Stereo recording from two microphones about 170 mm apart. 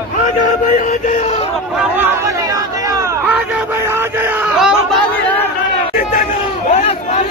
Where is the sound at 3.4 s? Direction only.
10° right (ahead or behind).